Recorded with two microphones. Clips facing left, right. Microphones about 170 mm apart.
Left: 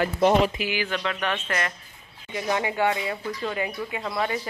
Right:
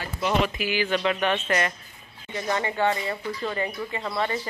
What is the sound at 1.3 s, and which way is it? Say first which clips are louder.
Speech: right 4 dB; 5° right (ahead or behind).